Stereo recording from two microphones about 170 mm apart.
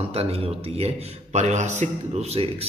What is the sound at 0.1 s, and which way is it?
A man's voice, 35° right (ahead or behind).